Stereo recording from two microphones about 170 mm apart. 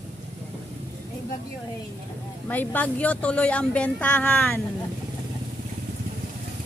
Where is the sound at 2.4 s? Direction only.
10° left (ahead or behind).